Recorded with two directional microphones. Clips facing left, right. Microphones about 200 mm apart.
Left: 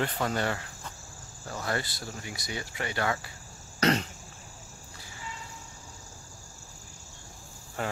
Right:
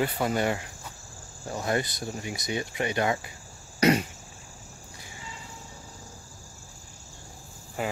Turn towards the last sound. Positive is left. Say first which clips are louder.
# right 2 dB
turn(degrees=-5)  # may be behind; listen again after turning